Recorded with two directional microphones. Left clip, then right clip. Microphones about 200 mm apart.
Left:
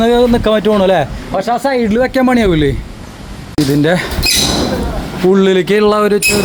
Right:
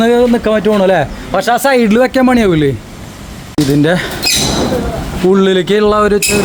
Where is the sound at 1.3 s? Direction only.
25° right (ahead or behind).